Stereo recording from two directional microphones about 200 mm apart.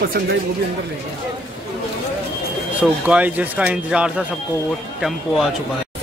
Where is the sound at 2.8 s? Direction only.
10° right (ahead or behind).